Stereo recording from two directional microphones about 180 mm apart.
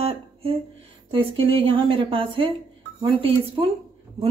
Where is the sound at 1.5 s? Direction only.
30° right (ahead or behind).